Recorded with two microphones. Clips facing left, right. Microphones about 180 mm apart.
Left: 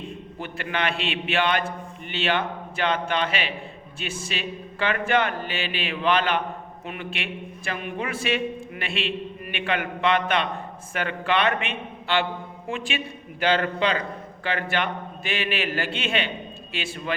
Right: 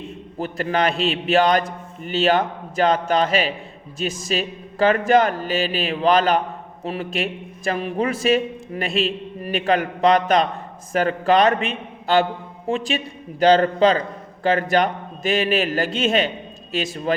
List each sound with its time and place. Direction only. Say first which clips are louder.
0.3 s a man's voice: right 8 dB; 40° right (ahead or behind)